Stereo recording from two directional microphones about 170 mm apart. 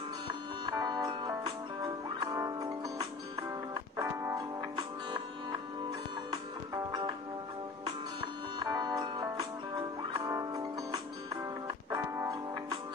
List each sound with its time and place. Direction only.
0.7 s music: 25° right (ahead or behind)
6.9 s music: 25° right (ahead or behind)
8.5 s music: 25° right (ahead or behind)